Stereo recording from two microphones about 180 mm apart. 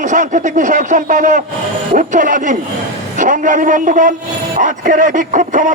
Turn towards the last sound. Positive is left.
turn(degrees=-45)  # may be behind; listen again after turning